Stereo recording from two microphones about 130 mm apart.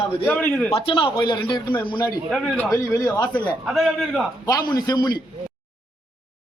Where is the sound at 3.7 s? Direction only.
Centre (ahead or behind).